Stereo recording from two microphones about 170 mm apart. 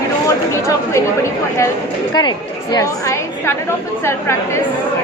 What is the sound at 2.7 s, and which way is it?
A woman's voice, 20° left (ahead or behind).